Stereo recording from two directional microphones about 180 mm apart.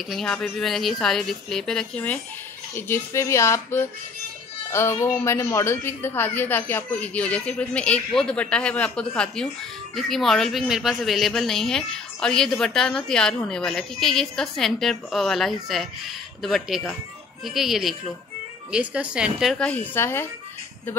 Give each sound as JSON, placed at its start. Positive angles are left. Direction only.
{"t": 0.1, "sound": "a woman's voice", "side_deg": 5}